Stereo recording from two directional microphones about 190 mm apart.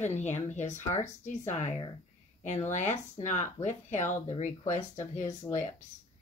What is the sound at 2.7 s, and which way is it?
Speech, 35° left (ahead or behind).